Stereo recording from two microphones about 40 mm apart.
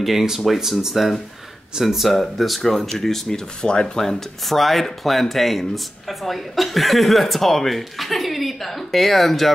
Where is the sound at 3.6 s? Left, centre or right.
Left.